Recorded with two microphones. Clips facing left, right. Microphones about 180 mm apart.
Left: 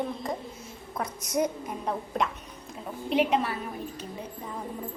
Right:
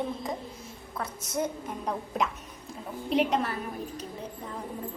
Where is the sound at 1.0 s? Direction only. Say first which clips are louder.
Left 3 dB; 15° left (ahead or behind).